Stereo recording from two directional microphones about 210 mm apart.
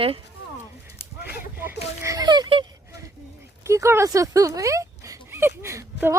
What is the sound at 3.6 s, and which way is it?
Speech, 15° right (ahead or behind).